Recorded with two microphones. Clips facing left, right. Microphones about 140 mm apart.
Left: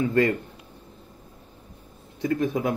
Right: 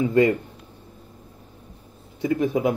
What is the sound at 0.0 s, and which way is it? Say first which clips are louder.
Speech: right 3 dB; 15° right (ahead or behind).